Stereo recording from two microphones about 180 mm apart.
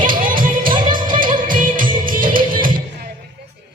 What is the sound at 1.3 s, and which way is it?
Music, 50° right (ahead or behind).